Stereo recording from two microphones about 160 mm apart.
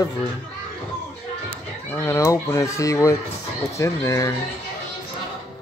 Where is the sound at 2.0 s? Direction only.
15° left (ahead or behind).